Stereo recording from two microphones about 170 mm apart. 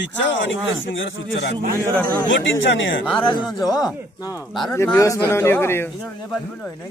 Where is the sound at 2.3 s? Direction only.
90° left.